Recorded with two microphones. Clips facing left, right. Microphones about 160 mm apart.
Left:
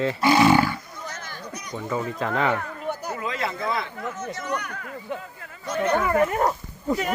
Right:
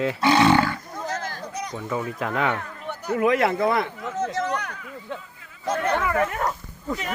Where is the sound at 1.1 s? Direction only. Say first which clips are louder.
Right 6 dB; 90° right.